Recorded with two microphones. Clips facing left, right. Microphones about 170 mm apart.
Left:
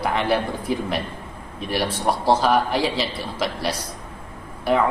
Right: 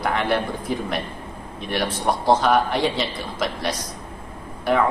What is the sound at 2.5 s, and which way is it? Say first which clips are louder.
Speech: right 1 dB; 5° left (ahead or behind).